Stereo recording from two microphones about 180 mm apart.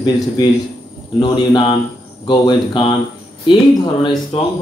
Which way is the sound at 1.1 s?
25° left (ahead or behind).